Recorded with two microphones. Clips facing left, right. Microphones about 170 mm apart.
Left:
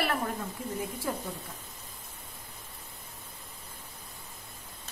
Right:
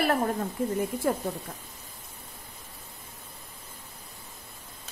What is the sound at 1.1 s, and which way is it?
Speech, 55° right (ahead or behind).